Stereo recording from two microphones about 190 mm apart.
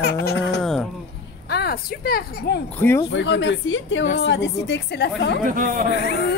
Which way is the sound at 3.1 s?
70° left (ahead or behind).